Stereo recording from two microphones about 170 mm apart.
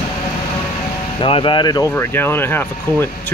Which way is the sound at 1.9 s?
10° left (ahead or behind).